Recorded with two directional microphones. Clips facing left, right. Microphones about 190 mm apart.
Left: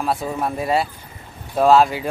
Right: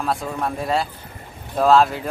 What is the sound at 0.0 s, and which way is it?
Speech, centre (ahead or behind).